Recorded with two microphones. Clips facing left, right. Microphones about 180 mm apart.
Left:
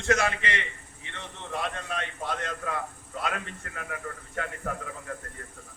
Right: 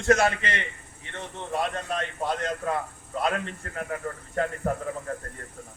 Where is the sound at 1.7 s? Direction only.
40° right (ahead or behind).